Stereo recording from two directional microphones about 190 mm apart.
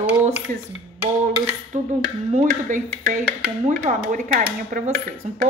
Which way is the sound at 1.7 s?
40° right (ahead or behind).